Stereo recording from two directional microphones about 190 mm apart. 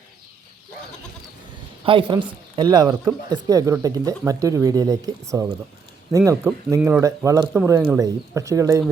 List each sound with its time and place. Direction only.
1.8 s speech: 25° right (ahead or behind)